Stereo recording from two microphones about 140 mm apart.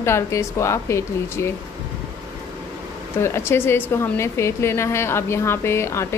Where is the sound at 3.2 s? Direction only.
20° left (ahead or behind).